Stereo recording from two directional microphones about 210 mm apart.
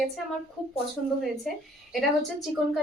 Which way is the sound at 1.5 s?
Centre (ahead or behind).